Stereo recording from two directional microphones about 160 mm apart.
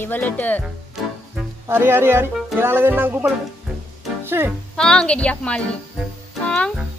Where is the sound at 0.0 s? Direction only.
10° left (ahead or behind).